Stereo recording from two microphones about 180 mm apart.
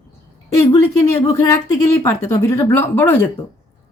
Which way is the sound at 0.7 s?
15° left (ahead or behind).